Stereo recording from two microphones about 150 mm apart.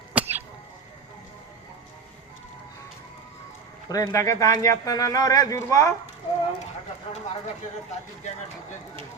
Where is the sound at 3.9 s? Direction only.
20° left (ahead or behind).